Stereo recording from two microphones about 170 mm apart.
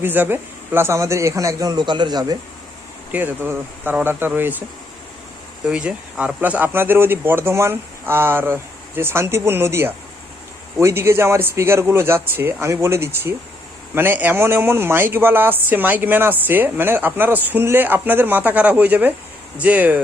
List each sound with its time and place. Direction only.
0.0 s a man's voice: 10° right (ahead or behind)
3.1 s a man's voice: 10° right (ahead or behind)
5.6 s a man's voice: 5° right (ahead or behind)